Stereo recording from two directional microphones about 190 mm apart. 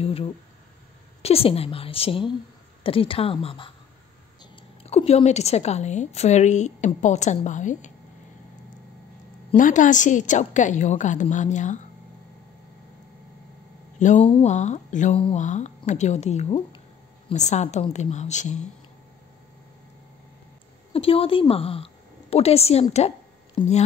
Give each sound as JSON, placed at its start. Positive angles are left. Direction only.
{"t": 0.0, "sound": "a woman's voice", "side_deg": 30}
{"t": 4.8, "sound": "a woman's voice", "side_deg": 35}
{"t": 9.6, "sound": "a woman's voice", "side_deg": 40}
{"t": 14.0, "sound": "a woman's voice", "side_deg": 40}
{"t": 20.9, "sound": "a woman's voice", "side_deg": 30}